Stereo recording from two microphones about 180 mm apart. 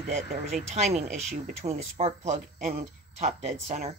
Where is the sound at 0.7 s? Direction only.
40° right (ahead or behind).